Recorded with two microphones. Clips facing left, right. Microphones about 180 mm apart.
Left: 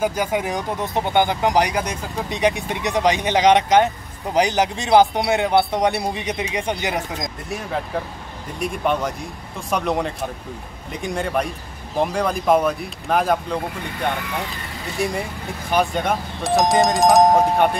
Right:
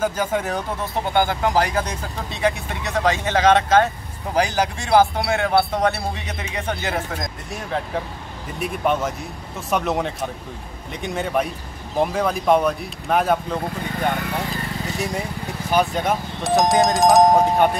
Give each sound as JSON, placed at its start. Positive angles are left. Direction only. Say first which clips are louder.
{"t": 0.0, "sound": "speech", "louder": "left 1 dB", "side_deg": 10}
{"t": 8.5, "sound": "speech", "louder": "even", "side_deg": -5}
{"t": 15.7, "sound": "speech", "louder": "even", "side_deg": 0}